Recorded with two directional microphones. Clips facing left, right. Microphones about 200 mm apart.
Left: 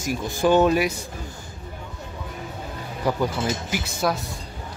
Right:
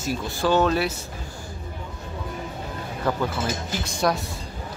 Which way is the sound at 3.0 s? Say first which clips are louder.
Left 2 dB; 10° left (ahead or behind).